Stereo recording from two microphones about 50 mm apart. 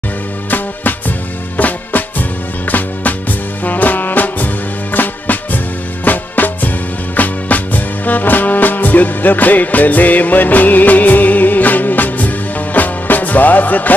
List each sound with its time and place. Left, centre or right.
0.5 s music: left